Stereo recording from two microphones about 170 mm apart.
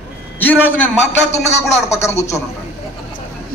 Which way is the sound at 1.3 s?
40° left (ahead or behind).